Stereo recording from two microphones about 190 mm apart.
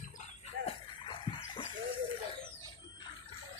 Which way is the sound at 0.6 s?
25° left (ahead or behind).